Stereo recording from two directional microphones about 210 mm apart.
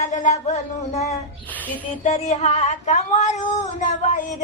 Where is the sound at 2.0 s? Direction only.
30° left (ahead or behind).